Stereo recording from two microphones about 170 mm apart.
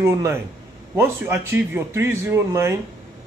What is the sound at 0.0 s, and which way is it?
Speech, 15° right (ahead or behind).